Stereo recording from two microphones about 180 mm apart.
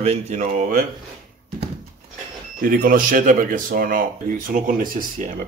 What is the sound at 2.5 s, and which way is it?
Speech, 50° right (ahead or behind).